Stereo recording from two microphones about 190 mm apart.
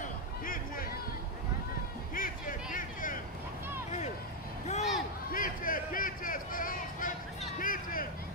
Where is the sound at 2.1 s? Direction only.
45° left (ahead or behind).